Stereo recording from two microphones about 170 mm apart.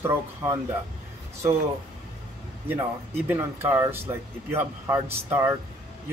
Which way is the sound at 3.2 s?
15° right (ahead or behind).